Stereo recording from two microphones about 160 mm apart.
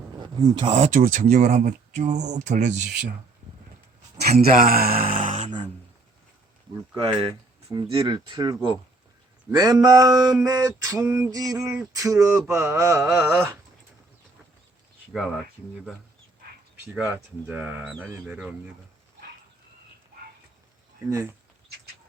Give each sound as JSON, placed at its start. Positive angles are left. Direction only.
{"t": 0.2, "sound": "speech", "side_deg": -25}
{"t": 0.8, "sound": "speech", "side_deg": -55}
{"t": 2.7, "sound": "speech", "side_deg": -90}
{"t": 4.5, "sound": "mantra", "side_deg": -65}
{"t": 5.4, "sound": "speech", "side_deg": -30}
{"t": 6.9, "sound": "speech", "side_deg": -35}
{"t": 11.9, "sound": "a sound", "side_deg": -20}
{"t": 15.1, "sound": "speech", "side_deg": 0}
{"t": 16.8, "sound": "a sound", "side_deg": -10}
{"t": 21.1, "sound": "speech", "side_deg": -20}